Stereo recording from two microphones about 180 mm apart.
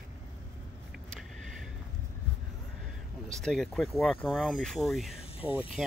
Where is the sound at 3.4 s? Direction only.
Centre (ahead or behind).